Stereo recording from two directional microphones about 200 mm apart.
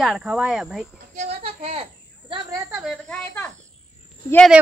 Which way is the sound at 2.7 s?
Centre (ahead or behind).